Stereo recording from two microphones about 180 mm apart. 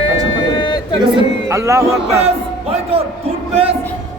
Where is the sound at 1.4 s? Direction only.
15° right (ahead or behind).